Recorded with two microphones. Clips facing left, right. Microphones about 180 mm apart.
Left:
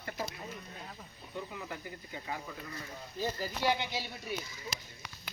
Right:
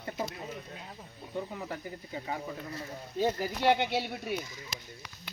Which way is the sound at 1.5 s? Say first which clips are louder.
Right 4 dB; 35° right (ahead or behind).